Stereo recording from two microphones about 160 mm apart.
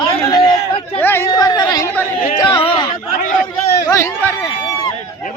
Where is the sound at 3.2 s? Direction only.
60° left (ahead or behind).